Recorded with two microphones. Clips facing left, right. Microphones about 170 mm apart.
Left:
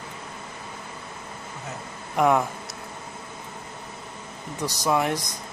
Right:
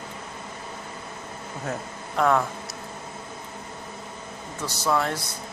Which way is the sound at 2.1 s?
15° left (ahead or behind).